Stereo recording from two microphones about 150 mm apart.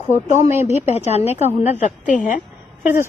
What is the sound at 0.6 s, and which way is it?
A woman's voice, 45° left (ahead or behind).